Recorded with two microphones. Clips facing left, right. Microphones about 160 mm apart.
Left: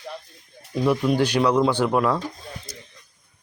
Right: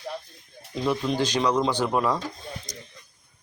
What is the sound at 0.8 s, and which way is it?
A man's voice, 10° left (ahead or behind).